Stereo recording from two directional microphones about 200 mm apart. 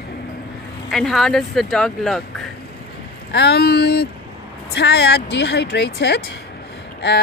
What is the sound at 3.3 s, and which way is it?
Speech, 55° left (ahead or behind).